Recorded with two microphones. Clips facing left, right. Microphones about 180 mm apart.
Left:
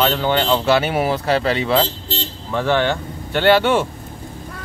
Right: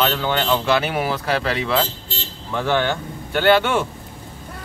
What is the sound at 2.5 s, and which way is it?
Speech, 10° right (ahead or behind).